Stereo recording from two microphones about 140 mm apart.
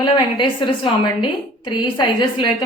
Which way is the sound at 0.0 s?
35° left (ahead or behind).